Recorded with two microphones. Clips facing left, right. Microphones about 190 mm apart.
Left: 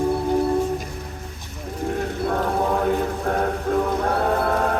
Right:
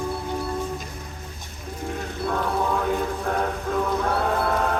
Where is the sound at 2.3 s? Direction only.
45° left (ahead or behind).